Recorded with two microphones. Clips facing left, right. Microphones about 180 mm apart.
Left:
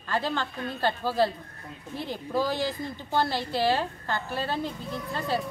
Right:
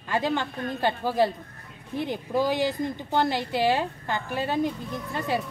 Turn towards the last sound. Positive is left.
turn(degrees=-15)  # may be behind; listen again after turning